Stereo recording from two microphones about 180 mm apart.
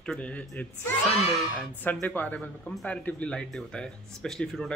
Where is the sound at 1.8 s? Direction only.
10° left (ahead or behind).